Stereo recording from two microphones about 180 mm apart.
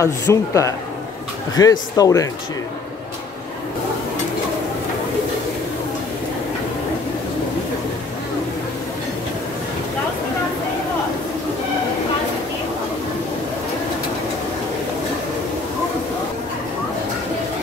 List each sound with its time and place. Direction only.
0.0 s a man's voice: 15° left (ahead or behind)